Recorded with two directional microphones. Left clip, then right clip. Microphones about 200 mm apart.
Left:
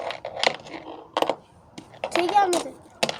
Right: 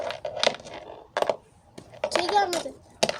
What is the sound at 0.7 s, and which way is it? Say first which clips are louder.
Coin: left 3 dB; 5° left (ahead or behind).